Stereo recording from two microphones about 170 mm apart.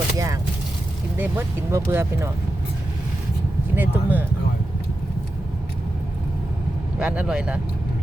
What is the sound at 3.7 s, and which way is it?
Speech, 10° right (ahead or behind).